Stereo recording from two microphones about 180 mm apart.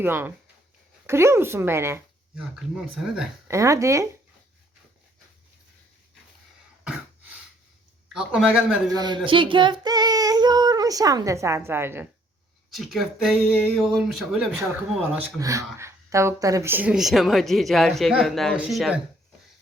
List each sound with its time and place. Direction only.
0.0 s speech: 10° right (ahead or behind)
3.5 s speech: 15° right (ahead or behind)
8.1 s speech: 5° right (ahead or behind)
8.9 s speech: 25° right (ahead or behind)
12.7 s speech: centre (ahead or behind)
15.4 s speech: 15° right (ahead or behind)